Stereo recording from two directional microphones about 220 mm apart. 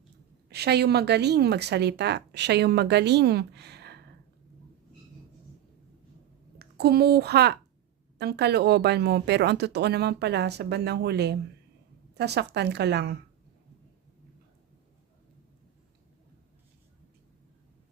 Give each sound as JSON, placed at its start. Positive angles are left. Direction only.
{"t": 0.5, "sound": "a woman's voice", "side_deg": -50}
{"t": 6.6, "sound": "a woman's voice", "side_deg": -45}